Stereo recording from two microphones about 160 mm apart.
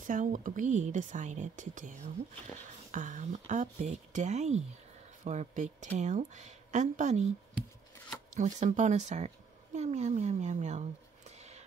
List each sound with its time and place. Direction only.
0.0 s speech: 55° right (ahead or behind)
8.4 s speech: 50° right (ahead or behind)